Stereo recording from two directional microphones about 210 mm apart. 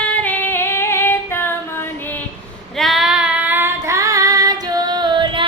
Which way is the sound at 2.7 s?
Centre (ahead or behind).